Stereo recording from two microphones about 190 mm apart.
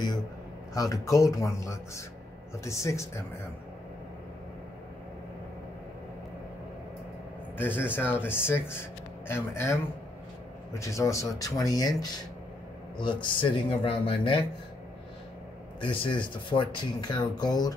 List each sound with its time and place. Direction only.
0.7 s speech: 20° left (ahead or behind)
7.5 s speech: 10° left (ahead or behind); by 14.4 s 25° left (ahead or behind)
15.8 s speech: 25° left (ahead or behind)